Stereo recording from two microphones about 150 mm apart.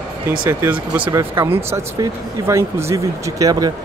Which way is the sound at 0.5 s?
10° right (ahead or behind).